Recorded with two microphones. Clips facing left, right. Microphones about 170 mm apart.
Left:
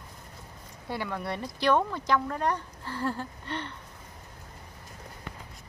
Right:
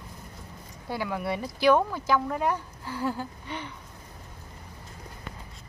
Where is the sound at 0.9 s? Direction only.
5° right (ahead or behind).